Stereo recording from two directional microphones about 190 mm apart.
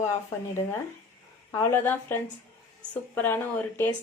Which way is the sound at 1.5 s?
10° left (ahead or behind).